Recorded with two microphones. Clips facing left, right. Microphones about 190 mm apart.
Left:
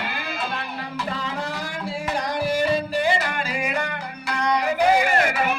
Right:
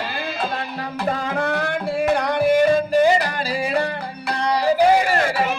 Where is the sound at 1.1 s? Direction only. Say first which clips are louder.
Right 9 dB; 60° right (ahead or behind).